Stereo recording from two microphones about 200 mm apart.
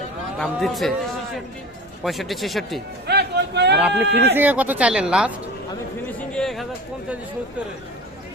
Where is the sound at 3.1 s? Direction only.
55° right (ahead or behind).